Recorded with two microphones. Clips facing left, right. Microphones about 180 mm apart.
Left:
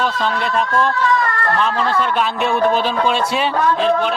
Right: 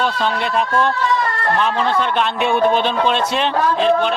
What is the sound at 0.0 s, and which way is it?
Speech, centre (ahead or behind).